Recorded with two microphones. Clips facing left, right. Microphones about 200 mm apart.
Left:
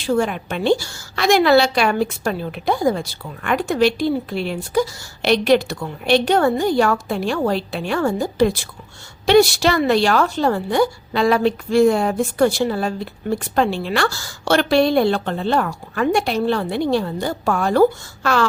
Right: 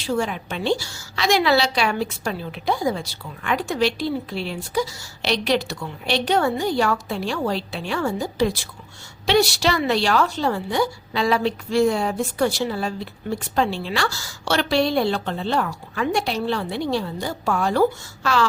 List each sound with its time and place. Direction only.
0.0 s a woman's voice: 55° left (ahead or behind)